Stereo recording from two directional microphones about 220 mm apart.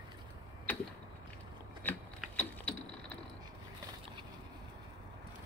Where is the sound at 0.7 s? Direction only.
5° left (ahead or behind).